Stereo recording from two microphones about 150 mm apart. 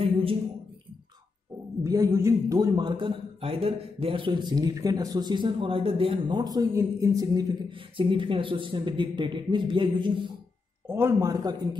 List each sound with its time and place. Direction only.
0.0 s a sound: 40° right (ahead or behind)
1.8 s a man's voice: 20° right (ahead or behind)
8.0 s a man's voice: 35° right (ahead or behind)
10.9 s a man's voice: 15° right (ahead or behind)